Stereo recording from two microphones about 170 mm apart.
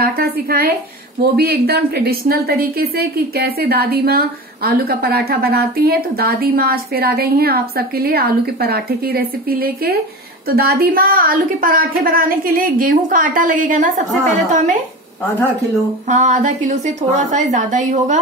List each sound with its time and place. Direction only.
0.0 s a sound: 60° right (ahead or behind)
1.3 s a woman's voice: 65° right (ahead or behind); by 14.8 s 50° right (ahead or behind)
16.1 s a woman's voice: 45° right (ahead or behind)